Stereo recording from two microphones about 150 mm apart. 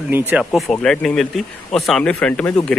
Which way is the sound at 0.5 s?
5° left (ahead or behind).